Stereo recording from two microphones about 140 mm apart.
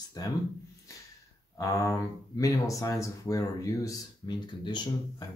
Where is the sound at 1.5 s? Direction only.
25° left (ahead or behind).